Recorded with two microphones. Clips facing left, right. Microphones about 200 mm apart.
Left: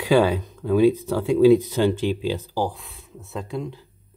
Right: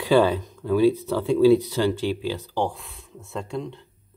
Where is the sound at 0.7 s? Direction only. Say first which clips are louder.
Left 2 dB; 15° left (ahead or behind).